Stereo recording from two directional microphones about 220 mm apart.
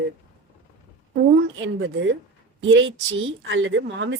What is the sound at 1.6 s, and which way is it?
A woman's voice, 55° right (ahead or behind).